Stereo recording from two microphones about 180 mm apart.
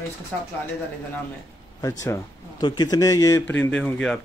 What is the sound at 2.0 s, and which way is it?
Speech, 20° left (ahead or behind).